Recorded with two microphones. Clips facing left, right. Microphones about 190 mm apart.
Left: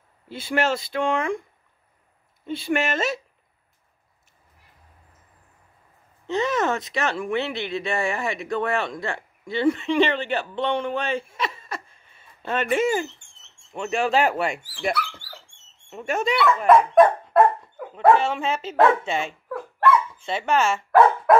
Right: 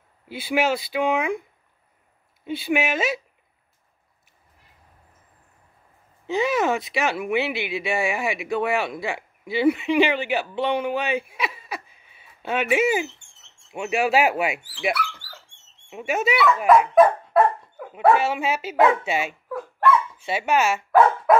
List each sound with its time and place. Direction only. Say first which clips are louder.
0.3 s speech: right 1 dB; 5° right (ahead or behind)
2.4 s speech: right 1 dB; 5° right (ahead or behind)
6.2 s speech: right 1 dB; 10° right (ahead or behind)
15.0 s dog: even; 30° left (ahead or behind)
15.9 s speech: right 1 dB; 5° right (ahead or behind)
16.9 s dog: even; 5° right (ahead or behind)
17.9 s speech: left 1 dB; 5° right (ahead or behind)